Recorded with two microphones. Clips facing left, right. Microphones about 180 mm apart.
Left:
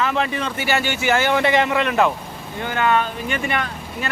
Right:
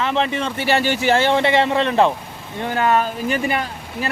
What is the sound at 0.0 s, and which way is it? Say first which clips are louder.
A man's voice: right 1 dB; 25° right (ahead or behind).